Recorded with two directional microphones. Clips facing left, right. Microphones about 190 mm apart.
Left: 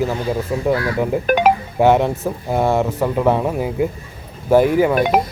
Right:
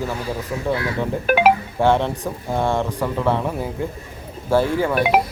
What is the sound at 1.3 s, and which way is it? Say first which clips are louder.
Speech: even; 5° right (ahead or behind).